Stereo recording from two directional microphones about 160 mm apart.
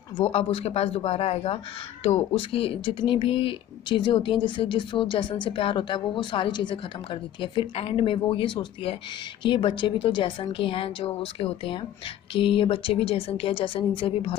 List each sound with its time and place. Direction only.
0.2 s speech: 35° left (ahead or behind)